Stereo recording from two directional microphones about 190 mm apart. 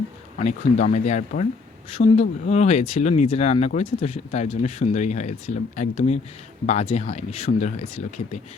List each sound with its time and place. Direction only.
0.3 s speech: 40° left (ahead or behind)